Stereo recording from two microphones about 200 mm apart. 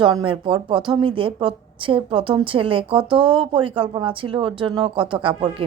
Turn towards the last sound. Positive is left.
turn(degrees=-25)  # may be behind; listen again after turning